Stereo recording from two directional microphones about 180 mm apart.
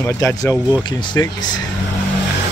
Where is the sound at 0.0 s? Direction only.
15° left (ahead or behind).